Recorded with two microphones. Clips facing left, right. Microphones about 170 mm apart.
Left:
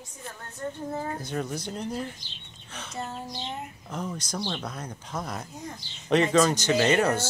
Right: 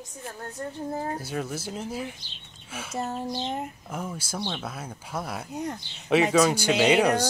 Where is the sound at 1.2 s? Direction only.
5° right (ahead or behind).